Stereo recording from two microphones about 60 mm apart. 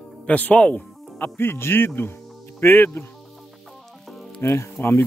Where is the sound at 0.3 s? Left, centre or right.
Left.